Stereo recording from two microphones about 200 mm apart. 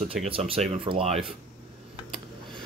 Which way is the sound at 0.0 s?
35° right (ahead or behind).